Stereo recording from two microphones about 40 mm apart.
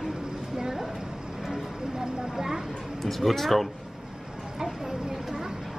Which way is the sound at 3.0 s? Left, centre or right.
Centre.